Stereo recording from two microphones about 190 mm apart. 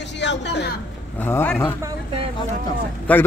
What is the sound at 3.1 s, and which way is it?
Speech, 5° left (ahead or behind).